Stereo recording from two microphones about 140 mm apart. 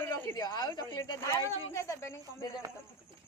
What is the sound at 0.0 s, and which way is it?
A woman's voice, 20° left (ahead or behind).